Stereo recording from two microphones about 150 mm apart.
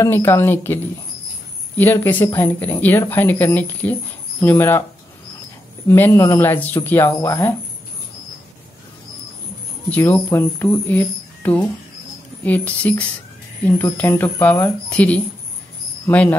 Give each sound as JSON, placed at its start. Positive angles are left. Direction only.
{"t": 0.0, "sound": "speech", "side_deg": 15}
{"t": 1.8, "sound": "speech", "side_deg": 15}
{"t": 5.9, "sound": "speech", "side_deg": 15}
{"t": 9.8, "sound": "speech", "side_deg": 10}